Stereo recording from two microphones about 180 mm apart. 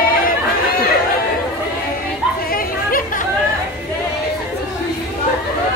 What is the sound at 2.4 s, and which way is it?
Chatter, 50° left (ahead or behind).